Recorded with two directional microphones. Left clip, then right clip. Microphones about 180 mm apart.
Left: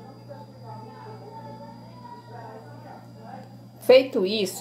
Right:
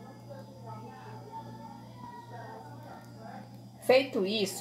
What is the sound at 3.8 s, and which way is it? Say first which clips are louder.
Speech: left 8 dB; 15° left (ahead or behind).